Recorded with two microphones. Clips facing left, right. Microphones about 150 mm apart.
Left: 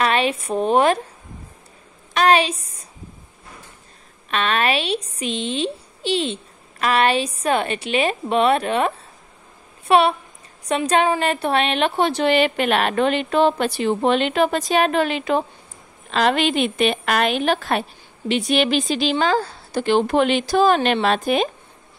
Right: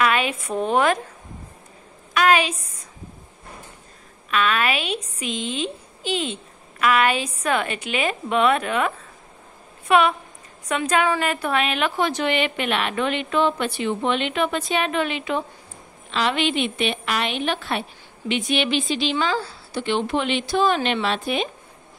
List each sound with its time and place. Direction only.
0.0 s a sound: 35° left (ahead or behind)
0.6 s a woman's voice: 20° left (ahead or behind)
2.1 s a woman's voice: 30° left (ahead or behind)
4.3 s a woman's voice: 35° left (ahead or behind)
4.8 s a woman's voice: 15° right (ahead or behind)
6.8 s a woman's voice: 35° left (ahead or behind)